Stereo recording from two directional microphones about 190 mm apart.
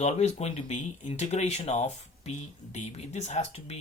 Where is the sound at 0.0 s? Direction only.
35° left (ahead or behind).